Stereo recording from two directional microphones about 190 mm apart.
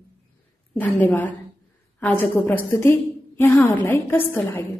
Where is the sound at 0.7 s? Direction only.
10° left (ahead or behind).